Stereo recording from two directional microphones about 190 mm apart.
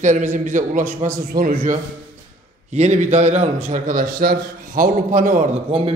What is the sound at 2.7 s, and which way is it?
Speech, 35° right (ahead or behind).